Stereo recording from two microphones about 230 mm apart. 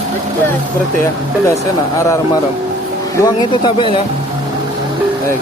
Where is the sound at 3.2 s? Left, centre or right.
Centre.